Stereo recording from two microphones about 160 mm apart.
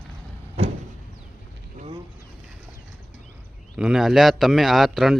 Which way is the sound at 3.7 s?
5° right (ahead or behind).